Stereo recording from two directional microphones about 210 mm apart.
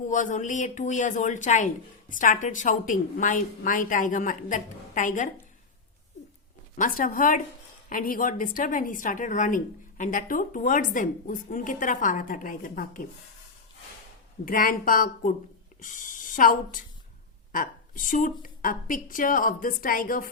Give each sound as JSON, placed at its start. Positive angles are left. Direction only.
{"t": 0.1, "sound": "speech", "side_deg": 35}
{"t": 6.7, "sound": "speech", "side_deg": 40}
{"t": 14.4, "sound": "speech", "side_deg": 40}